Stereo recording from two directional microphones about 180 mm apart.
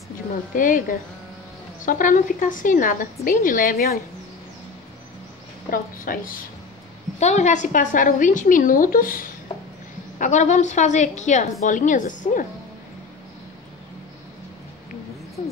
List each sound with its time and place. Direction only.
0.6 s a woman's voice: 50° left (ahead or behind)
5.7 s a woman's voice: 50° left (ahead or behind)
7.2 s a woman's voice: 40° left (ahead or behind)
9.5 s a sound: 25° left (ahead or behind)
10.1 s a woman's voice: 45° left (ahead or behind)